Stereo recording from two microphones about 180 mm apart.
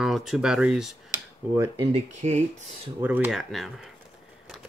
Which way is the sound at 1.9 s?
40° right (ahead or behind).